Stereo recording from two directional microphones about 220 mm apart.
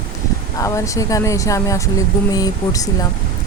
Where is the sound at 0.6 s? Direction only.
15° left (ahead or behind).